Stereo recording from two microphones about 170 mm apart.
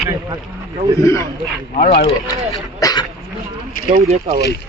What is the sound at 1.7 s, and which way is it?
Speech, 55° left (ahead or behind).